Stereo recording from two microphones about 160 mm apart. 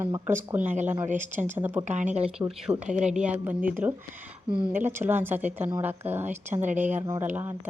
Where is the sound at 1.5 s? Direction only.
10° right (ahead or behind).